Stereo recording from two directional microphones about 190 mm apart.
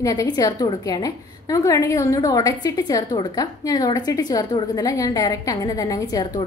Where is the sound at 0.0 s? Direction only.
20° left (ahead or behind).